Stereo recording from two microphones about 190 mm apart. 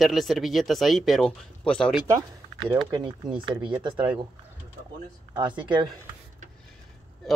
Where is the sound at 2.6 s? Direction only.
25° right (ahead or behind).